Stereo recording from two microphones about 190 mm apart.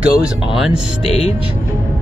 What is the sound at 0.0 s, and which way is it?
Speech, centre (ahead or behind).